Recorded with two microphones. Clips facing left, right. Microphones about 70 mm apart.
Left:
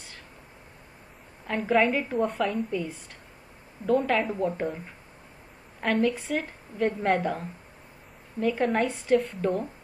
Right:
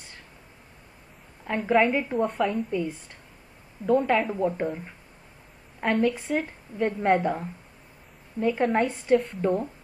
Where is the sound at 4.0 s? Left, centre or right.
Centre.